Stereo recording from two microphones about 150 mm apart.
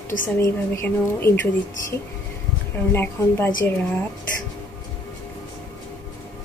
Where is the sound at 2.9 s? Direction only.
15° left (ahead or behind).